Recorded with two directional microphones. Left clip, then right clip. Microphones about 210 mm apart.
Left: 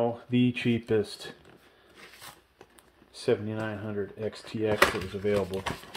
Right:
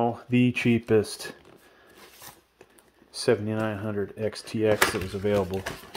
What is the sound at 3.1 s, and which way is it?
Speech, 40° right (ahead or behind).